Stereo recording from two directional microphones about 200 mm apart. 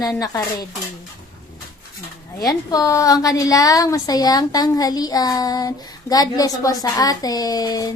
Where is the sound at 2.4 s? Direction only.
15° left (ahead or behind).